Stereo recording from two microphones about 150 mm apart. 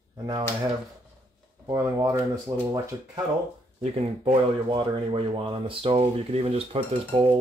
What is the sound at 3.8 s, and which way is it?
Speech, 45° right (ahead or behind).